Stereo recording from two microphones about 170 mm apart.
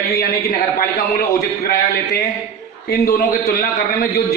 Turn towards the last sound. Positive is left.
turn(degrees=60)  # may be behind; listen again after turning